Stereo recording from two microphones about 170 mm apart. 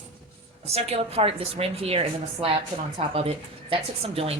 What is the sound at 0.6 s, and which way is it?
A woman's voice, 35° right (ahead or behind).